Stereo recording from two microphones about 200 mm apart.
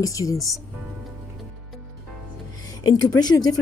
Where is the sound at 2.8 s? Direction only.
20° left (ahead or behind).